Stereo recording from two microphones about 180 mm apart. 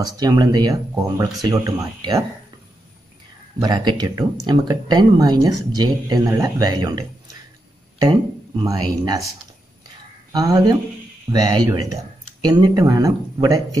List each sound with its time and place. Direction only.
0.0 s speech: 25° right (ahead or behind)
3.5 s speech: 25° right (ahead or behind)
10.3 s speech: 20° right (ahead or behind)